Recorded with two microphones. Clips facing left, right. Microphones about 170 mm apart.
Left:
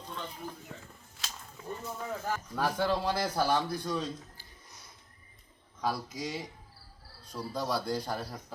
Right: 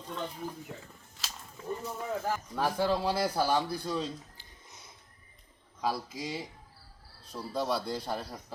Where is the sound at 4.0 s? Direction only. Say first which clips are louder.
Right 1 dB; 20° right (ahead or behind).